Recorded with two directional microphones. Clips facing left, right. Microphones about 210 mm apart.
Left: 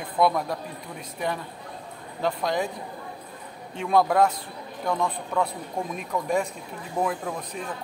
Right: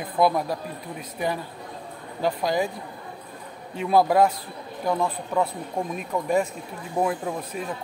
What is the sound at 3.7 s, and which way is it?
A man's voice, 5° right (ahead or behind).